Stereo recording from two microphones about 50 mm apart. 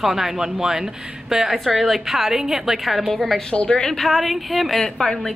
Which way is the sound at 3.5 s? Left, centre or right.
Centre.